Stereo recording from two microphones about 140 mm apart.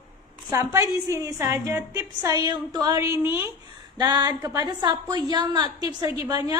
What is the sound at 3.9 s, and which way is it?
A woman's voice, 30° right (ahead or behind).